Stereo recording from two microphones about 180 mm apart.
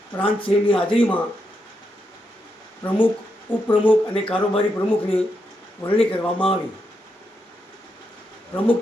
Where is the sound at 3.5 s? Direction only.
10° left (ahead or behind).